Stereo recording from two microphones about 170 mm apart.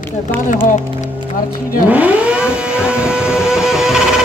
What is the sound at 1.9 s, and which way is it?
Vehicle, 10° right (ahead or behind).